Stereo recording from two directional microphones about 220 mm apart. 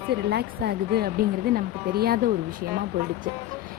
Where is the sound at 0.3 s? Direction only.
45° right (ahead or behind).